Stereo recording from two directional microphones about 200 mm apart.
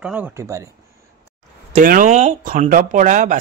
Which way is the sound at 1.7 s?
40° right (ahead or behind).